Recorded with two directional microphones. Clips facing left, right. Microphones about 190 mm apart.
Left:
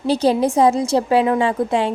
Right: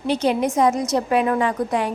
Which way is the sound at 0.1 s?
35° left (ahead or behind).